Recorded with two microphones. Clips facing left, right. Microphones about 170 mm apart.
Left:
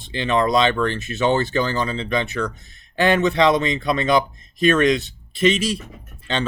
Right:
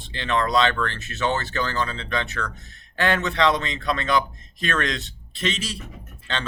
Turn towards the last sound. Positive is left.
turn(degrees=15)  # may be behind; listen again after turning